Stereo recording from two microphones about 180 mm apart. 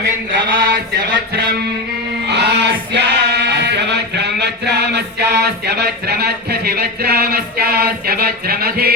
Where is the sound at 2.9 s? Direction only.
70° right (ahead or behind).